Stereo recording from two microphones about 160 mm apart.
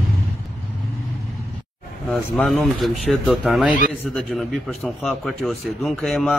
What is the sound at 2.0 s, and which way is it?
Speech, 5° left (ahead or behind).